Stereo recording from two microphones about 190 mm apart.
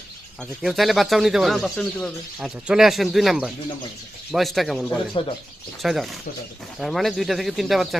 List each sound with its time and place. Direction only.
0.6 s speech: centre (ahead or behind)
5.2 s speech: 30° left (ahead or behind)
5.8 s speech: centre (ahead or behind)